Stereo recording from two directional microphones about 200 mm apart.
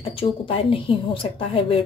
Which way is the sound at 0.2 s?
25° left (ahead or behind).